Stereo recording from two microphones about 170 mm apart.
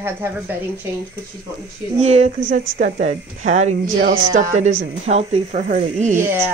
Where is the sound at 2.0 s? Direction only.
40° right (ahead or behind).